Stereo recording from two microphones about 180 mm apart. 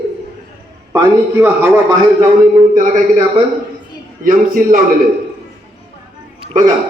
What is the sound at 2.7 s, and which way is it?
Speech, 45° right (ahead or behind).